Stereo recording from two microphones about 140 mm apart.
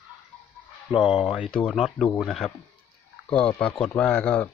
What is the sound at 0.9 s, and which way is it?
Speech, 35° left (ahead or behind).